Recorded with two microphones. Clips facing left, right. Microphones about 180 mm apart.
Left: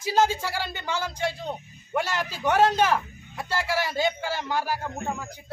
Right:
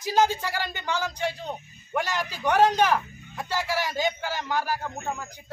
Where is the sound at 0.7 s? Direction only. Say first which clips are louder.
Right 1 dB; 10° left (ahead or behind).